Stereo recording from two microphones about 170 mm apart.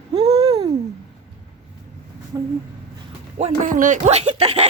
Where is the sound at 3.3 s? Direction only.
35° right (ahead or behind).